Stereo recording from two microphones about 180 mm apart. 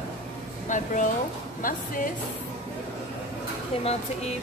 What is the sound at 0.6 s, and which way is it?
Speech, 45° left (ahead or behind).